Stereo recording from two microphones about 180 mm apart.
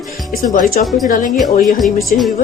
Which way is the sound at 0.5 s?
50° left (ahead or behind).